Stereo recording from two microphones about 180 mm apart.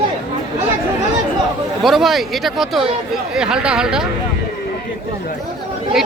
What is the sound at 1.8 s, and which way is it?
Speech, centre (ahead or behind).